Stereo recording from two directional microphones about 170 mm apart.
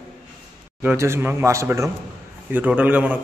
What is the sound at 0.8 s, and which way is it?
A man's voice, 15° right (ahead or behind).